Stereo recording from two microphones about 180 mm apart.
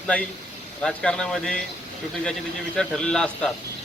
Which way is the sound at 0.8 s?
5° left (ahead or behind).